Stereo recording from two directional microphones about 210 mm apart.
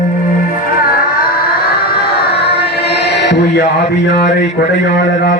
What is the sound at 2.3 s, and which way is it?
Music, 50° left (ahead or behind).